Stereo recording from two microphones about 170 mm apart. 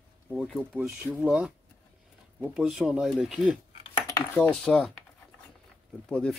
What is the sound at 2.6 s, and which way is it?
Speech, 5° right (ahead or behind).